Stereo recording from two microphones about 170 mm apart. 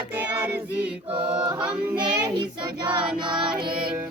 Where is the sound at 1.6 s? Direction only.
5° right (ahead or behind).